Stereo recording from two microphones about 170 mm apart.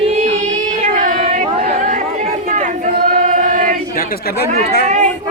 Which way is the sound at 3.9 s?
60° left (ahead or behind).